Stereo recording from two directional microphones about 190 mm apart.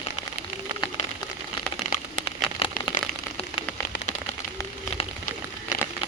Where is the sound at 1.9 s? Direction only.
30° left (ahead or behind).